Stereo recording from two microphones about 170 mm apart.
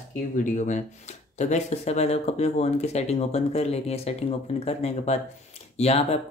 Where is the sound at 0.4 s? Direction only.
50° left (ahead or behind).